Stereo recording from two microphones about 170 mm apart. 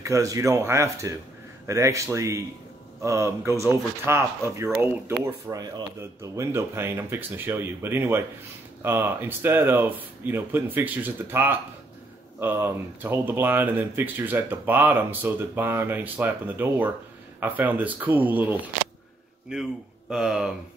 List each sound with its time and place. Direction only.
0.0 s speech: 20° right (ahead or behind); by 20.5 s 5° right (ahead or behind)